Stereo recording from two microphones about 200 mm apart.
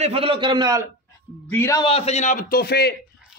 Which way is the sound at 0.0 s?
30° right (ahead or behind).